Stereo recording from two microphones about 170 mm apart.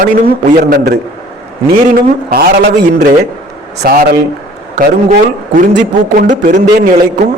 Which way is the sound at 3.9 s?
65° right (ahead or behind).